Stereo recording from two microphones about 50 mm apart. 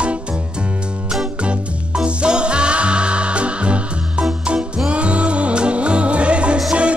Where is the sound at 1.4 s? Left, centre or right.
Right.